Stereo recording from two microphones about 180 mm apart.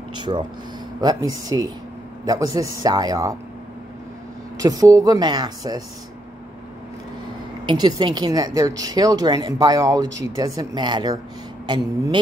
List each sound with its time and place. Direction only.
0.1 s speech: 25° right (ahead or behind)
4.6 s speech: 20° right (ahead or behind)
7.6 s speech: 25° right (ahead or behind)